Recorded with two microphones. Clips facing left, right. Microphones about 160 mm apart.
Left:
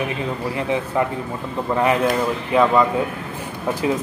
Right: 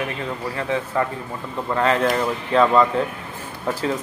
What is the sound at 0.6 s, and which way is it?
Speech, 15° left (ahead or behind).